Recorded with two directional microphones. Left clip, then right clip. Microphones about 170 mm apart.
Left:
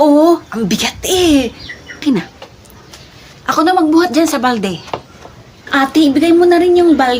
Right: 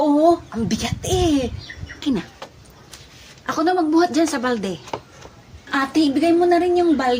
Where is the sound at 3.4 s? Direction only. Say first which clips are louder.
Left 8 dB; 25° left (ahead or behind).